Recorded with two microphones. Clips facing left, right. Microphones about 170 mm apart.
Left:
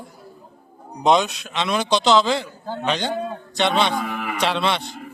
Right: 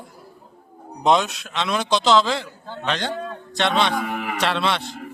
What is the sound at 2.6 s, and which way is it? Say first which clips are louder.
Speech: left 5 dB; 40° left (ahead or behind).